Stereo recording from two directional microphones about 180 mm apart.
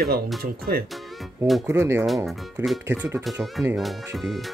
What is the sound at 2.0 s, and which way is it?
Speech, centre (ahead or behind).